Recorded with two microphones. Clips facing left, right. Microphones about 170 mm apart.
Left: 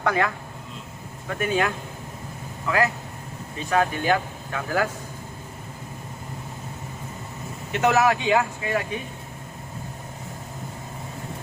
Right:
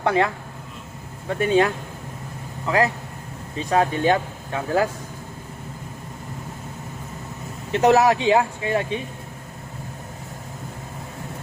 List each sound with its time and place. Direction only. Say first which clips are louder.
0.0 s speech: right 3 dB; 30° right (ahead or behind)
1.3 s speech: right 5 dB; 30° right (ahead or behind)
7.7 s speech: right 4 dB; 35° right (ahead or behind)